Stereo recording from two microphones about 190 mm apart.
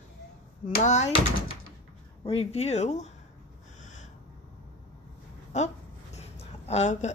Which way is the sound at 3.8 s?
40° left (ahead or behind).